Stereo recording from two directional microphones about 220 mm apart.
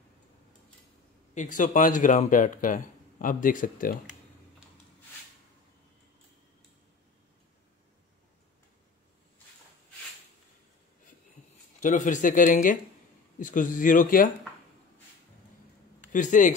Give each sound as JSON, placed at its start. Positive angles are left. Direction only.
{"t": 1.3, "sound": "speech", "side_deg": 35}
{"t": 11.8, "sound": "speech", "side_deg": 35}
{"t": 16.1, "sound": "speech", "side_deg": 35}